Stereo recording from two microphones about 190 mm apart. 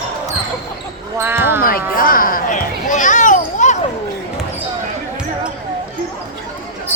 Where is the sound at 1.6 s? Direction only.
50° left (ahead or behind).